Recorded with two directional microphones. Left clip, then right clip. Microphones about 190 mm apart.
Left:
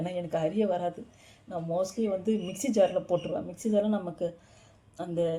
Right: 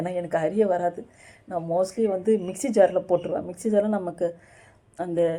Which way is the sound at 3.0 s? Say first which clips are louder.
Right 5 dB; 15° right (ahead or behind).